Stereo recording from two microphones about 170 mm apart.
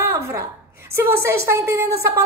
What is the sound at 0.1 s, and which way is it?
A woman's voice, 15° right (ahead or behind).